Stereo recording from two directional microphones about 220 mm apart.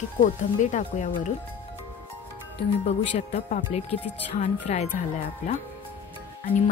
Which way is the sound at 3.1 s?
30° left (ahead or behind).